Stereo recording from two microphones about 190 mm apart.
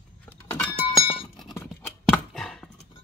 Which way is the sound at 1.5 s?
10° left (ahead or behind).